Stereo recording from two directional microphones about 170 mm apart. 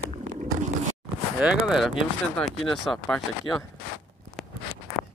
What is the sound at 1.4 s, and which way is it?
Speech, 5° right (ahead or behind).